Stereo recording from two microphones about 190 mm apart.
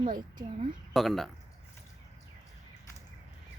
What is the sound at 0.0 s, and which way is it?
Speech, 45° right (ahead or behind).